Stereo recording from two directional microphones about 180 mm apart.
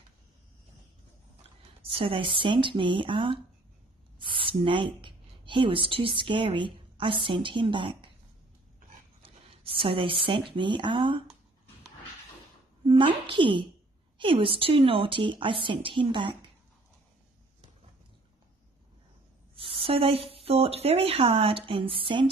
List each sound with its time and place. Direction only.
1.8 s a woman's voice: 30° right (ahead or behind)
9.2 s zipper: 30° right (ahead or behind)
10.5 s a woman's voice: 25° right (ahead or behind)
12.8 s a woman's voice: 25° right (ahead or behind)
19.5 s speech: 30° right (ahead or behind)